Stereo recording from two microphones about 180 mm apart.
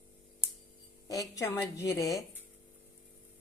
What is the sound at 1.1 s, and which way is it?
A woman's voice, 20° left (ahead or behind).